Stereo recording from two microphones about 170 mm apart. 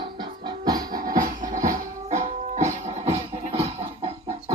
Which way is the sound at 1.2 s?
50° right (ahead or behind).